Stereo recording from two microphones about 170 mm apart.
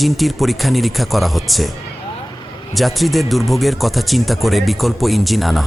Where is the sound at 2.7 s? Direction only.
Centre (ahead or behind).